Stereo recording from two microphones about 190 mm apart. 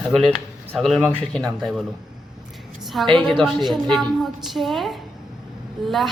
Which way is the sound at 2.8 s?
Centre (ahead or behind).